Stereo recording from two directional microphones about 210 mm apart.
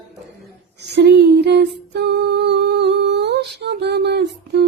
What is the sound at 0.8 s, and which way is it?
Humming, 55° right (ahead or behind).